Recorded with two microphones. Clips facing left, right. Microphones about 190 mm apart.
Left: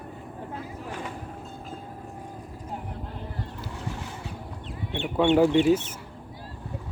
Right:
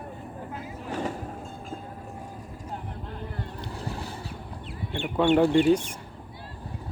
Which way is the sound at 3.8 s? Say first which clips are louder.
Right 1 dB; 35° right (ahead or behind).